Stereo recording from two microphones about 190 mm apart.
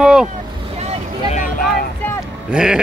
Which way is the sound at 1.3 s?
45° left (ahead or behind).